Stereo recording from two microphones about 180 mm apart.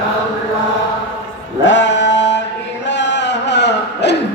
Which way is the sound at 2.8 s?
80° left.